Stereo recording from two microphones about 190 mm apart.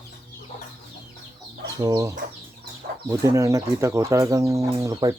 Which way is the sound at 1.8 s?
20° right (ahead or behind).